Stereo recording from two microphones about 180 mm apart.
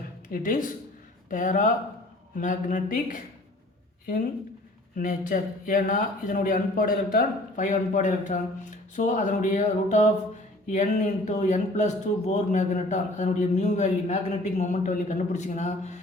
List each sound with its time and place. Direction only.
0.3 s a man's voice: 50° left (ahead or behind)
4.9 s a man's voice: 50° left (ahead or behind)